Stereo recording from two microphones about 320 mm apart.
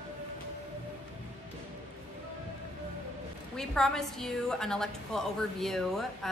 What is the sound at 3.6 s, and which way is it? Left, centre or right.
A woman's voice, centre.